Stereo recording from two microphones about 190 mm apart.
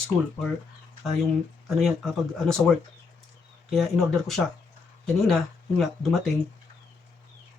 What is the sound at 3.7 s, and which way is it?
Speech, centre (ahead or behind).